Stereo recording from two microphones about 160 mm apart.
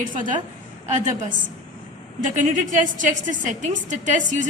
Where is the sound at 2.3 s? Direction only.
50° right (ahead or behind).